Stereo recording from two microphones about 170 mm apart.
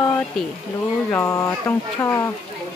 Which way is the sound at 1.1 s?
15° left (ahead or behind).